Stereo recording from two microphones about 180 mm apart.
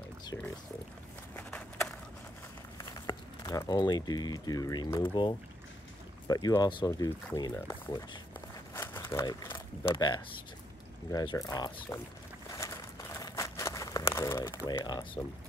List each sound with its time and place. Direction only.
1.3 s walk: 10° left (ahead or behind)
2.8 s speech: 20° left (ahead or behind)
12.4 s crumpling: 15° left (ahead or behind)
14.5 s speech: 20° left (ahead or behind)